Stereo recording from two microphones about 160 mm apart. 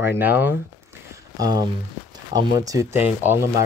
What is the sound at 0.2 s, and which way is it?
Speech, 10° right (ahead or behind).